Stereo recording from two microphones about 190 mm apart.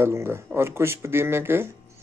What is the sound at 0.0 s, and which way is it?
Speech, 15° right (ahead or behind).